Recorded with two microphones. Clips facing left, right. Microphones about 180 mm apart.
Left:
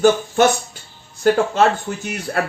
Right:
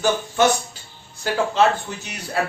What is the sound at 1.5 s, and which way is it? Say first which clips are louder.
Speech: left 2 dB; 50° left (ahead or behind).